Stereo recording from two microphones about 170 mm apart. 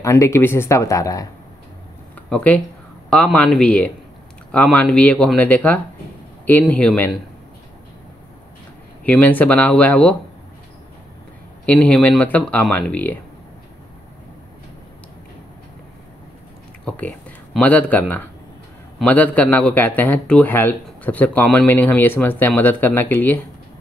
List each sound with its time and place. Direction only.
0.0 s a man's voice: 15° left (ahead or behind)
2.2 s a man's voice: 5° left (ahead or behind)
9.0 s a man's voice: 10° left (ahead or behind)
11.6 s a man's voice: 10° left (ahead or behind)
16.8 s a man's voice: 10° left (ahead or behind)